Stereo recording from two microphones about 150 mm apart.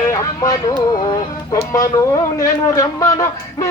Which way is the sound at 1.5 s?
25° left (ahead or behind).